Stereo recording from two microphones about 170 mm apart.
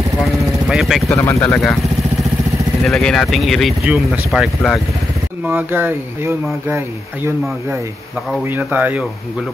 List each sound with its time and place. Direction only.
0.7 s speech: centre (ahead or behind)
1.0 s speech: 15° left (ahead or behind)
2.8 s speech: 5° left (ahead or behind)
5.5 s speech: 10° right (ahead or behind)
8.5 s speech: 10° right (ahead or behind)